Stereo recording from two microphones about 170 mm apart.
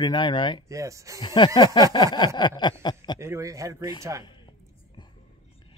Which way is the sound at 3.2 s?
15° right (ahead or behind).